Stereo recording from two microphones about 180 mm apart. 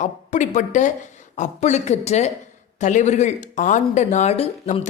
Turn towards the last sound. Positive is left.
turn(degrees=35)  # may be behind; listen again after turning